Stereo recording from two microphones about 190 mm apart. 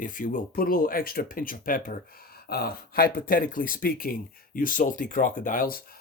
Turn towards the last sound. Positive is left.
turn(degrees=45)  # may be behind; listen again after turning